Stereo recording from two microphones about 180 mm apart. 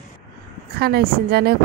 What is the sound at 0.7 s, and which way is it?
Speech, 60° right (ahead or behind).